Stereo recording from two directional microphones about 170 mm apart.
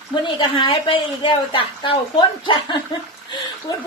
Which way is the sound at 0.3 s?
30° left (ahead or behind).